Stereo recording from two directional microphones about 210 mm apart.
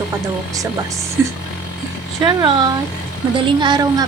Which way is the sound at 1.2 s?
10° right (ahead or behind).